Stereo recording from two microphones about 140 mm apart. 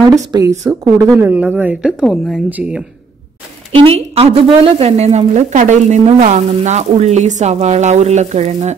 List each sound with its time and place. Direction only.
0.0 s speech: 25° right (ahead or behind); by 2.4 s 5° left (ahead or behind)
3.7 s speech: 45° right (ahead or behind)